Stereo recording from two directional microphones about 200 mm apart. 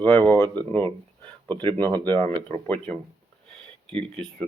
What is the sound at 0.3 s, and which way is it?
Speech, 10° left (ahead or behind).